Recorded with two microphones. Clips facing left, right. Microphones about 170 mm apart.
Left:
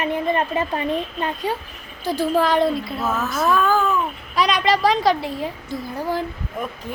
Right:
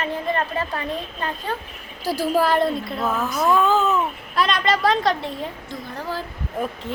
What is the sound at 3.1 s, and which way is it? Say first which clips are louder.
Speech: right 1 dB; 15° right (ahead or behind).